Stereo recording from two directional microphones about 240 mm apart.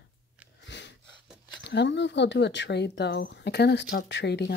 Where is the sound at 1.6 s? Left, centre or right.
Left.